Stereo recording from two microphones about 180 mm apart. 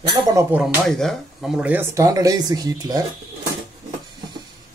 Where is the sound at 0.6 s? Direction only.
Centre (ahead or behind); by 3.0 s 20° right (ahead or behind).